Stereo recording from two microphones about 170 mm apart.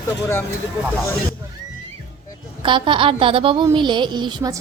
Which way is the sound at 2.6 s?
30° right (ahead or behind).